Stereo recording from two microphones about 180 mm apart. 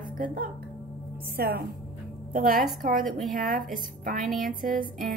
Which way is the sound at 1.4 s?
60° right (ahead or behind).